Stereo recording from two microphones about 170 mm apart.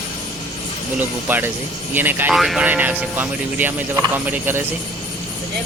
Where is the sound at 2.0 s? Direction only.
10° right (ahead or behind).